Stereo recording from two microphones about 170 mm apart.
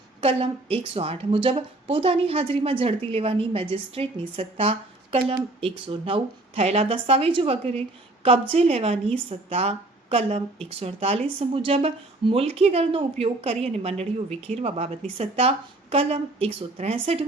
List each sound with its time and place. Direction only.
0.2 s speech: 35° right (ahead or behind)